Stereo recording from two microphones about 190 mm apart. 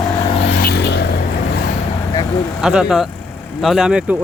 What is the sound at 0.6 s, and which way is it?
Vehicle, 55° left (ahead or behind).